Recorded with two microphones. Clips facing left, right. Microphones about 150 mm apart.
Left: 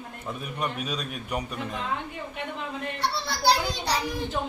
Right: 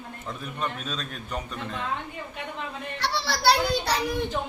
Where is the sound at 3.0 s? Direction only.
90° right; by 4.2 s 65° right (ahead or behind).